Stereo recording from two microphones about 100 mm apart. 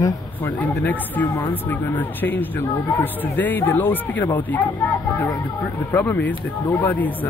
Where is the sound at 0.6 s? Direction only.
15° left (ahead or behind).